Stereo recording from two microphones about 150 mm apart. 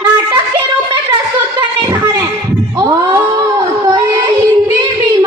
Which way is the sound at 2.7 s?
25° right (ahead or behind).